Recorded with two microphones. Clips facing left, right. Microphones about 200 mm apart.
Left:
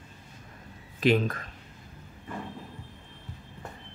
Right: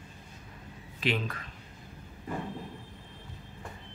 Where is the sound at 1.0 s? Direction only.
45° left (ahead or behind).